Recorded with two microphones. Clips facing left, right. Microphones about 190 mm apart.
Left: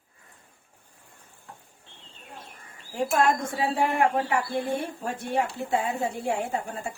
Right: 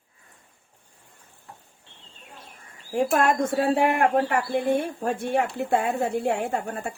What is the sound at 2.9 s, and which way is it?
Speech, 55° right (ahead or behind).